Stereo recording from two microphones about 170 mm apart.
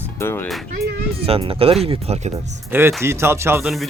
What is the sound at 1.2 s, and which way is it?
Speech, 35° right (ahead or behind).